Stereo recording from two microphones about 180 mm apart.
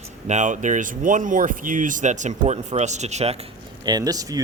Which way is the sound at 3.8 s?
20° right (ahead or behind).